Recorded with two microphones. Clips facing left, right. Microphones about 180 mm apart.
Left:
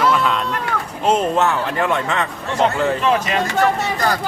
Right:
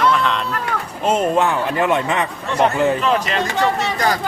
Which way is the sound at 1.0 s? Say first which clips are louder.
Even; 10° right (ahead or behind).